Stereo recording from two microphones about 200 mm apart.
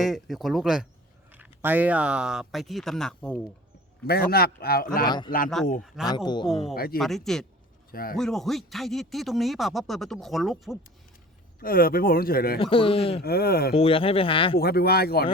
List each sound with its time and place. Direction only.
0.0 s speech: centre (ahead or behind)
4.0 s speech: 50° left (ahead or behind)
5.0 s speech: 20° left (ahead or behind)
5.6 s speech: centre (ahead or behind)
6.1 s speech: 20° left (ahead or behind)
6.7 s speech: 50° left (ahead or behind)
7.0 s speech: centre (ahead or behind)
7.9 s speech: 45° left (ahead or behind)
8.1 s speech: centre (ahead or behind)
11.6 s speech: 45° left (ahead or behind)
12.5 s speech: 25° left (ahead or behind)
13.2 s speech: 50° left (ahead or behind)
13.7 s speech: 30° left (ahead or behind)
14.6 s speech: 50° left (ahead or behind)